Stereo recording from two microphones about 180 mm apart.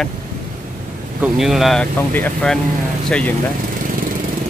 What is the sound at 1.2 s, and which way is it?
Speech, centre (ahead or behind).